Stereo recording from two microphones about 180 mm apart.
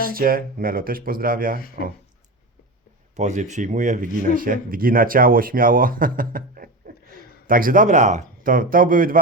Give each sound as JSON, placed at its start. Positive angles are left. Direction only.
{"t": 0.0, "sound": "speech", "side_deg": -55}
{"t": 3.2, "sound": "speech", "side_deg": -40}